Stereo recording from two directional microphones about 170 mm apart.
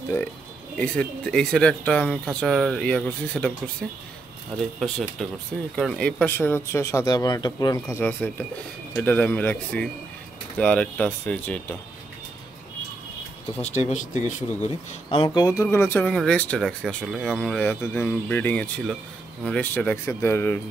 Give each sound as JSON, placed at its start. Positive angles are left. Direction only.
{"t": 0.7, "sound": "speech", "side_deg": 5}
{"t": 7.9, "sound": "speech", "side_deg": 10}
{"t": 13.6, "sound": "speech", "side_deg": 40}
{"t": 15.2, "sound": "speech", "side_deg": 20}